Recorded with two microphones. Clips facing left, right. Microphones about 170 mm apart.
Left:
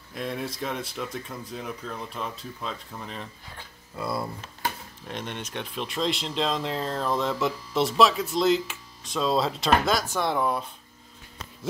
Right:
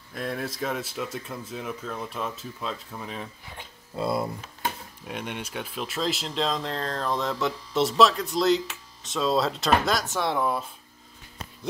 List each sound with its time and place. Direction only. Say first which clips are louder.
0.1 s speech: even; centre (ahead or behind)
3.5 s speech: right 5 dB; 25° right (ahead or behind)
4.4 s speech: even; 5° right (ahead or behind)